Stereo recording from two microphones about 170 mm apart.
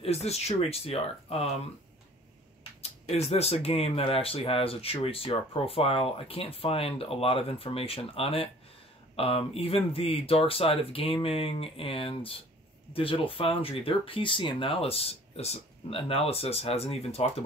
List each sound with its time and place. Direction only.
0.0 s speech: 40° left (ahead or behind)
2.8 s speech: 40° left (ahead or behind)